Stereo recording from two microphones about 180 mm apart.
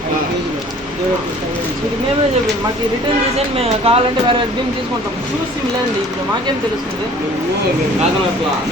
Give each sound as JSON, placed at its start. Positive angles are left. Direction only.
{"t": 3.3, "sound": "speech", "side_deg": -35}